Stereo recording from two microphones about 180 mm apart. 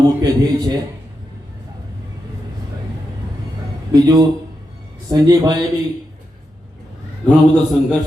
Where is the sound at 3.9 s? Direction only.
20° right (ahead or behind).